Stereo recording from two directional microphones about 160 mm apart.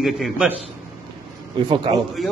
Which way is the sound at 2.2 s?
Centre (ahead or behind).